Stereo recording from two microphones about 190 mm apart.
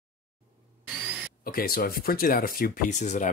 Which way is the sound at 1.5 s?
50° left (ahead or behind).